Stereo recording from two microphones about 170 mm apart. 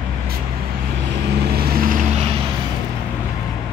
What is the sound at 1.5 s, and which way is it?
Vehicle, 65° right (ahead or behind).